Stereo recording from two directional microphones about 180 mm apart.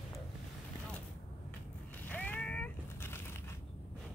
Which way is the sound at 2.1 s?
10° left (ahead or behind).